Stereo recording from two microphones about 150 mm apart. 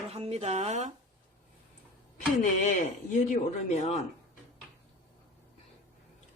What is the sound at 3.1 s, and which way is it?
Speech, 50° left (ahead or behind).